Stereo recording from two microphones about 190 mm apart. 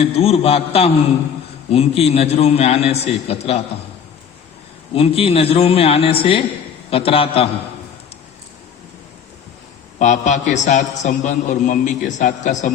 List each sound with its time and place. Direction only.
0.0 s a man's voice: 30° left (ahead or behind)
4.9 s a man's voice: 30° left (ahead or behind)
10.0 s a man's voice: 40° left (ahead or behind)